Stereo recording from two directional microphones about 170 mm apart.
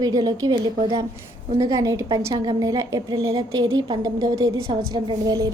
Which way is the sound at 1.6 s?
20° right (ahead or behind).